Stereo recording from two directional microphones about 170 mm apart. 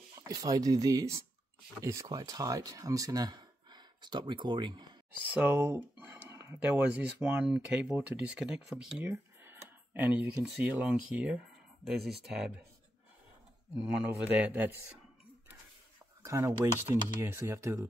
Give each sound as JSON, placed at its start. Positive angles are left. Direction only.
{"t": 0.1, "sound": "speech", "side_deg": -20}
{"t": 5.2, "sound": "speech", "side_deg": -10}
{"t": 9.1, "sound": "a sound", "side_deg": -15}
{"t": 10.4, "sound": "speech", "side_deg": -5}
{"t": 13.7, "sound": "speech", "side_deg": -5}
{"t": 16.2, "sound": "speech", "side_deg": -20}